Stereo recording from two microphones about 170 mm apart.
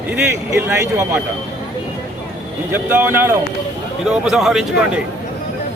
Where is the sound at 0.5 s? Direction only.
15° right (ahead or behind).